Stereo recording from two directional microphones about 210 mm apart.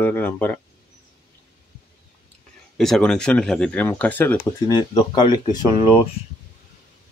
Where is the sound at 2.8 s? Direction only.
5° left (ahead or behind).